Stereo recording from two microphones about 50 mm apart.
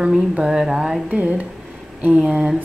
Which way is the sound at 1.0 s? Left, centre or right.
Right.